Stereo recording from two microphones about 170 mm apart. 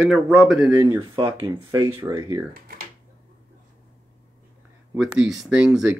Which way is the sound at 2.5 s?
60° right (ahead or behind).